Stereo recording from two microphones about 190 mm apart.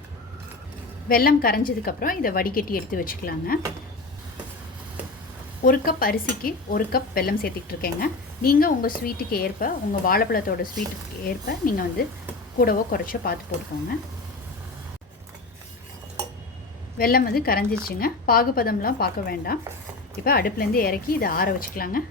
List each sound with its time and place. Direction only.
1.0 s speech: 50° left (ahead or behind)
5.6 s speech: 50° left (ahead or behind)
17.0 s speech: 50° left (ahead or behind)